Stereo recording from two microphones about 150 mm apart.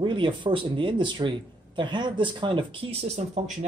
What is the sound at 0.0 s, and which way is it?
Speech, 30° right (ahead or behind).